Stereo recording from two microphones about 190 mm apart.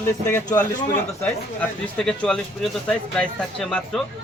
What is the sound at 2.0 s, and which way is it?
A man's voice, 5° left (ahead or behind).